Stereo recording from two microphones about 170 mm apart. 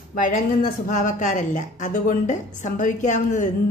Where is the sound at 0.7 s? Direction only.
50° left (ahead or behind).